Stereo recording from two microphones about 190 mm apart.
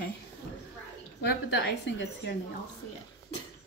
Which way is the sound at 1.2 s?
65° left (ahead or behind).